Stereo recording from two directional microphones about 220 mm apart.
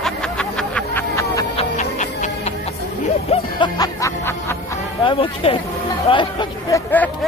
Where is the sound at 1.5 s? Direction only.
30° left (ahead or behind).